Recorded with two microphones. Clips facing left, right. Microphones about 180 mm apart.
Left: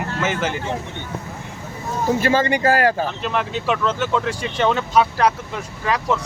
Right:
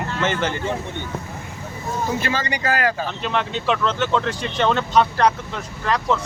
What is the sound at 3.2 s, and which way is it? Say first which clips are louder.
Speech: left 1 dB; 5° left (ahead or behind).